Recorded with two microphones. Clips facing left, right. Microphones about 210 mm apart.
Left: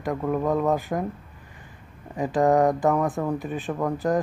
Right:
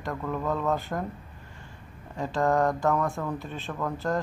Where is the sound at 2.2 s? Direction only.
15° left (ahead or behind).